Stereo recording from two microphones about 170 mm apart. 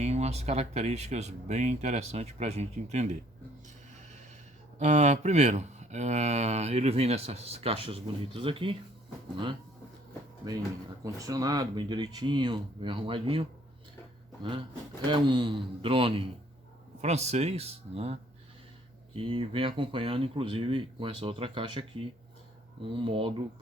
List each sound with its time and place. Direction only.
0.0 s speech: 40° right (ahead or behind)
4.8 s speech: 40° right (ahead or behind)
11.0 s speech: 20° right (ahead or behind)
15.0 s speech: 25° right (ahead or behind)